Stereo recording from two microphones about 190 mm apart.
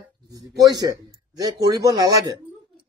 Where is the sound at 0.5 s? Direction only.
20° right (ahead or behind).